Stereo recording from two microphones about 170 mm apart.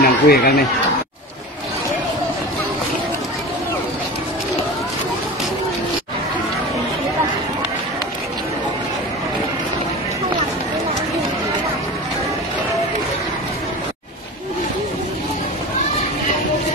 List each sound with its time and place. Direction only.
0.0 s speech: 65° left (ahead or behind)